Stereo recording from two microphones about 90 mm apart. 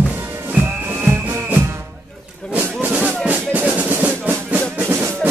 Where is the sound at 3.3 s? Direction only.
20° right (ahead or behind).